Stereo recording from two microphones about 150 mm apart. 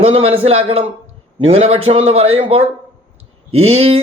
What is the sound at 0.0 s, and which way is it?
Speech, 40° right (ahead or behind).